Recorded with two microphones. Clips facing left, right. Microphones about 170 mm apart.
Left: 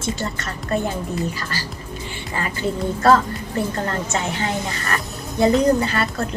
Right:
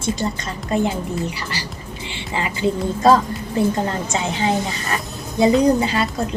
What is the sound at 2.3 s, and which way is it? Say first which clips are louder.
A woman's voice: right 3 dB; 15° right (ahead or behind).